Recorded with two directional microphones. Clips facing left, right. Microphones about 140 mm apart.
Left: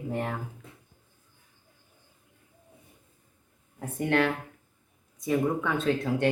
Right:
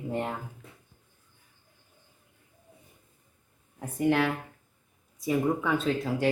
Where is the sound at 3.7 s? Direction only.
Centre (ahead or behind).